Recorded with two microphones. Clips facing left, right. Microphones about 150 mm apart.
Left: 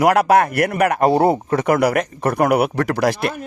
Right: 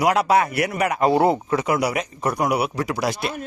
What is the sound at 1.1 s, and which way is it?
Speech, 35° left (ahead or behind).